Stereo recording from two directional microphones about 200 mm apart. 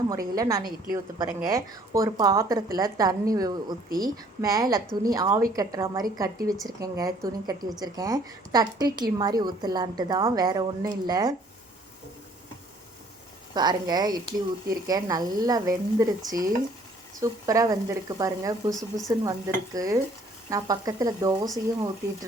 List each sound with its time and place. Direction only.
0.1 s a woman's voice: 20° right (ahead or behind)
13.5 s a woman's voice: 20° right (ahead or behind)